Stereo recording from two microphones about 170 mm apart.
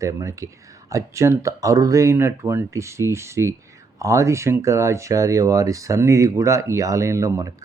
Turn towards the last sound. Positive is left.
turn(degrees=-20)  # may be behind; listen again after turning